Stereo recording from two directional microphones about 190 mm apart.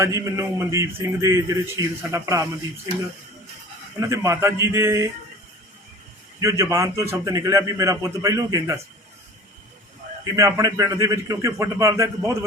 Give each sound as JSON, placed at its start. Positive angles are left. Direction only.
{"t": 0.0, "sound": "a man's voice", "side_deg": -15}
{"t": 4.0, "sound": "a man's voice", "side_deg": -15}
{"t": 6.4, "sound": "a man's voice", "side_deg": -15}
{"t": 10.3, "sound": "a man's voice", "side_deg": -15}